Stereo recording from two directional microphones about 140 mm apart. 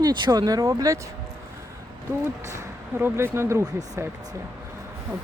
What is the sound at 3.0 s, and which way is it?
Speech, 15° right (ahead or behind).